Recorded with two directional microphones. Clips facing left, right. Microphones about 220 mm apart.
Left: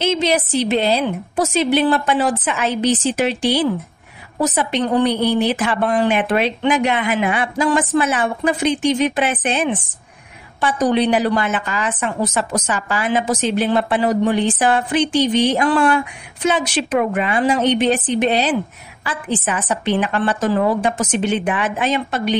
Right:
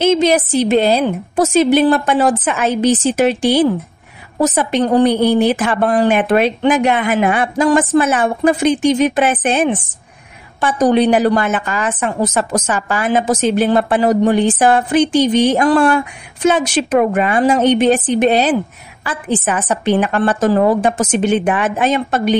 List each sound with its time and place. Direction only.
0.0 s a woman's voice: 50° right (ahead or behind)